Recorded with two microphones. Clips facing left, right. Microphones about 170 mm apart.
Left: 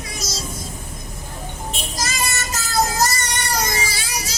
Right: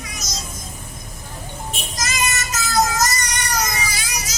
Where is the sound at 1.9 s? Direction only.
30° left (ahead or behind).